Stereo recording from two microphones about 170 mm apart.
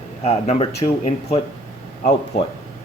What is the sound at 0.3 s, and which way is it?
Speech, 40° left (ahead or behind).